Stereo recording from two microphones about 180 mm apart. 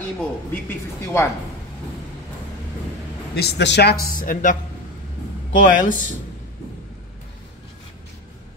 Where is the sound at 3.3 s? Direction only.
65° left (ahead or behind).